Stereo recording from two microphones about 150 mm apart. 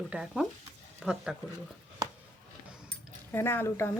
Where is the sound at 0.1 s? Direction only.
5° right (ahead or behind).